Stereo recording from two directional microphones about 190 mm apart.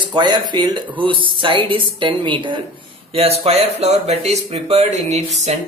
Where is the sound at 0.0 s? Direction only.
25° right (ahead or behind).